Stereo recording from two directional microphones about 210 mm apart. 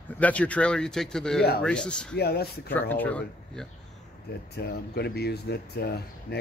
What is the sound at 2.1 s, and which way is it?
Speech, 50° left (ahead or behind).